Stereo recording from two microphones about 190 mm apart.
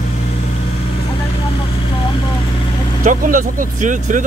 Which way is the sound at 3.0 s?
45° right (ahead or behind).